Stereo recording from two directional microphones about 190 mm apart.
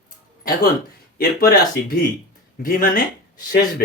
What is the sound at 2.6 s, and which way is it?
Speech, 50° left (ahead or behind).